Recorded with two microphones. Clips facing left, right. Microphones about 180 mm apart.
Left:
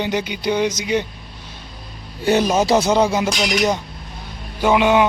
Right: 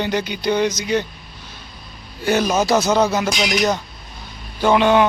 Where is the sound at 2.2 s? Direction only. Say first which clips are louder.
Left 1 dB; 20° left (ahead or behind).